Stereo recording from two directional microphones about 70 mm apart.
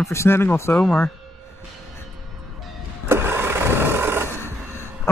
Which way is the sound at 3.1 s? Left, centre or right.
Right.